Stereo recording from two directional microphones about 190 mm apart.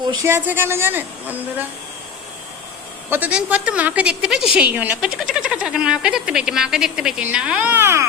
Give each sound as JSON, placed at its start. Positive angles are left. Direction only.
{"t": 0.0, "sound": "speech", "side_deg": -25}
{"t": 0.3, "sound": "a woman's voice", "side_deg": -10}
{"t": 3.1, "sound": "a woman's voice", "side_deg": -5}